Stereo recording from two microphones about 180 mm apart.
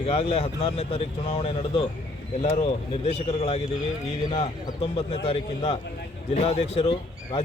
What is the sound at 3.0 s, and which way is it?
A man's voice, 35° left (ahead or behind).